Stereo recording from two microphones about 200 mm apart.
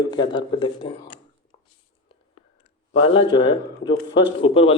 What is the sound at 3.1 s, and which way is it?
Speech, 25° left (ahead or behind).